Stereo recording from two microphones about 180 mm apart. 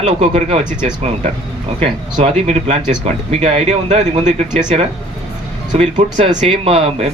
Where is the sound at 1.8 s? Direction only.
35° right (ahead or behind).